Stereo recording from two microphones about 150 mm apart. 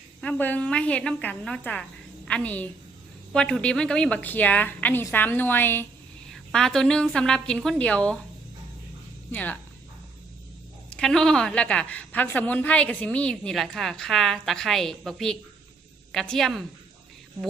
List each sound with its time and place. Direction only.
0.2 s a woman's voice: 10° left (ahead or behind)
9.3 s a woman's voice: 10° left (ahead or behind)
10.8 s a woman's voice: 5° left (ahead or behind)